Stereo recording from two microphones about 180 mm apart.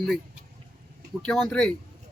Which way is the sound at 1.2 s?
5° left (ahead or behind).